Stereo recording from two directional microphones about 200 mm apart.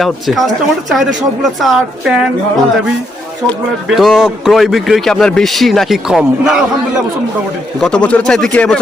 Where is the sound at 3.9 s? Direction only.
Centre (ahead or behind).